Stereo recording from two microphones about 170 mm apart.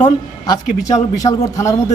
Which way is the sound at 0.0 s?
20° left (ahead or behind).